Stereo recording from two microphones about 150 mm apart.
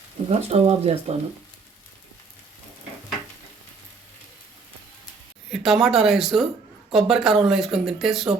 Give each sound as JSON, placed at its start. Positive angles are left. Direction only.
{"t": 0.3, "sound": "speech", "side_deg": -45}
{"t": 5.5, "sound": "speech", "side_deg": 0}